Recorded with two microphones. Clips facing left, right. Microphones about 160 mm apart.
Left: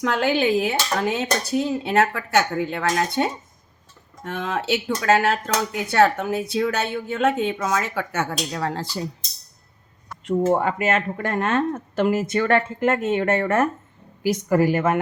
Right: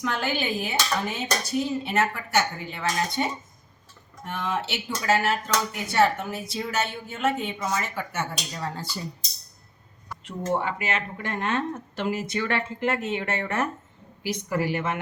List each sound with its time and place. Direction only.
0.0 s speech: 75° left (ahead or behind)
4.2 s speech: 70° left (ahead or behind); by 9.0 s 90° left
10.2 s speech: 50° left (ahead or behind)